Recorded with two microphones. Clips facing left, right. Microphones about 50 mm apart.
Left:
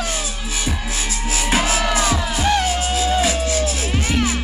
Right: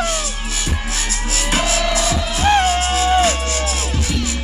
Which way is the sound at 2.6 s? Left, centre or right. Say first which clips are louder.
Right 3 dB; right.